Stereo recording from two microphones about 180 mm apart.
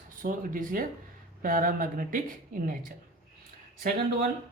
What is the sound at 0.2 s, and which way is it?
Speech, 50° right (ahead or behind).